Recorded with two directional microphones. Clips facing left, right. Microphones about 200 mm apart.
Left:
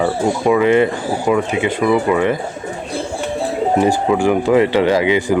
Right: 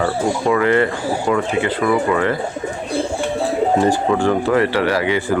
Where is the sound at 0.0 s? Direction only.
15° left (ahead or behind).